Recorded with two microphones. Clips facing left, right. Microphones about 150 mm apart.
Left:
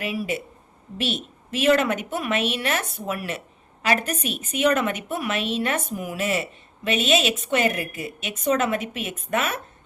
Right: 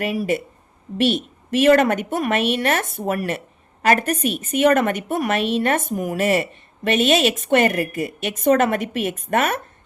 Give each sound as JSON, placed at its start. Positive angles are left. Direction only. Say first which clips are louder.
{"t": 0.0, "sound": "a woman's voice", "louder": "right 6 dB", "side_deg": -55}